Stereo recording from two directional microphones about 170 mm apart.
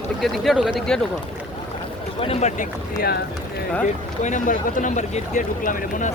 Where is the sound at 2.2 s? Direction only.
35° left (ahead or behind).